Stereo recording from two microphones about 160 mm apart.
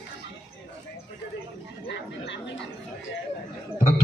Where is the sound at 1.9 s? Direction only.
90° left.